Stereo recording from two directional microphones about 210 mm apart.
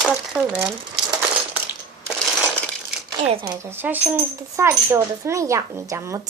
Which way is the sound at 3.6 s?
10° right (ahead or behind).